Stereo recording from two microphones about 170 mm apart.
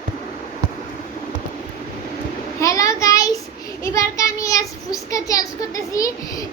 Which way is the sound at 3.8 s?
20° left (ahead or behind).